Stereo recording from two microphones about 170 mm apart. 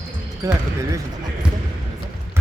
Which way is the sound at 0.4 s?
20° right (ahead or behind).